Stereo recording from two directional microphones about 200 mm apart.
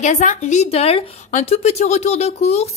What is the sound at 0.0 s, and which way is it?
A woman's voice, 40° left (ahead or behind).